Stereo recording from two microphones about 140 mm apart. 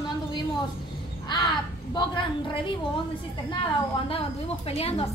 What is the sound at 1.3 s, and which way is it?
Crow, 30° left (ahead or behind).